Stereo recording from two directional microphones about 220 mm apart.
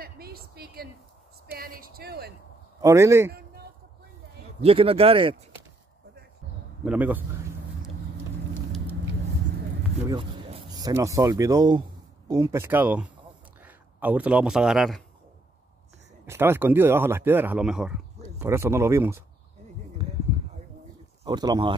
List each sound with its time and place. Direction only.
0.0 s a sound: 45° right (ahead or behind)
1.5 s speech: 40° right (ahead or behind)
2.8 s speech: 15° right (ahead or behind)
3.3 s a sound: 45° right (ahead or behind)
4.6 s speech: 25° right (ahead or behind)
6.8 s a sound: 5° right (ahead or behind)
10.7 s speech: 15° right (ahead or behind); by 15.0 s centre (ahead or behind)
16.3 s speech: 10° right (ahead or behind)
21.2 s speech: 20° right (ahead or behind)